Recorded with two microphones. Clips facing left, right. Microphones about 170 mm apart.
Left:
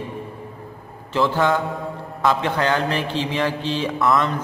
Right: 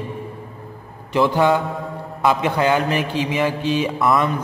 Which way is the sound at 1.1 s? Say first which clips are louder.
Right 3 dB; 15° right (ahead or behind).